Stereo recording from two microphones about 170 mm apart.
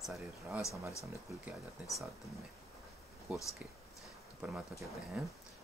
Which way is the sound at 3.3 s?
10° right (ahead or behind).